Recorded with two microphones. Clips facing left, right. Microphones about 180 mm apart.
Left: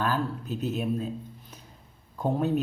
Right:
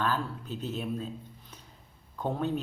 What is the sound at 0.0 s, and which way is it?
Speech, 10° left (ahead or behind).